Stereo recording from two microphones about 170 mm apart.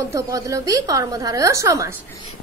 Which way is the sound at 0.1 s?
20° right (ahead or behind).